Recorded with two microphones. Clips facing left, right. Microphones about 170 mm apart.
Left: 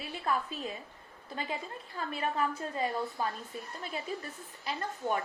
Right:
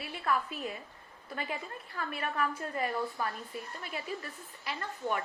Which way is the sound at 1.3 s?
20° left (ahead or behind).